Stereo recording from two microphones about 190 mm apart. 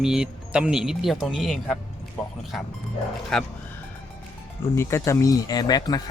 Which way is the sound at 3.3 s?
5° left (ahead or behind).